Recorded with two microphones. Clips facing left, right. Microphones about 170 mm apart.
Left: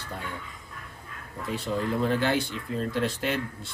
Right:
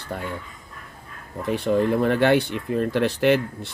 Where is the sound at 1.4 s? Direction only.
65° right (ahead or behind).